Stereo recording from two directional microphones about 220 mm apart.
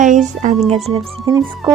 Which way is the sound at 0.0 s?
35° right (ahead or behind).